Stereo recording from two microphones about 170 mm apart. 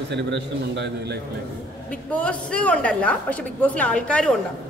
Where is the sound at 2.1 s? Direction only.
5° left (ahead or behind).